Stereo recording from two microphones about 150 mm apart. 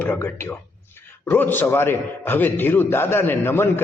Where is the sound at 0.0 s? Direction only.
15° left (ahead or behind).